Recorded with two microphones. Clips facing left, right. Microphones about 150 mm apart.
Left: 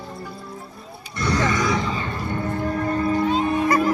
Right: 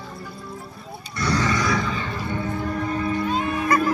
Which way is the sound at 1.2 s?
20° left (ahead or behind).